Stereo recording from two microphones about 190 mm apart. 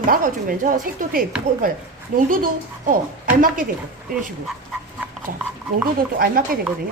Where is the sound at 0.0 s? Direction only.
45° right (ahead or behind).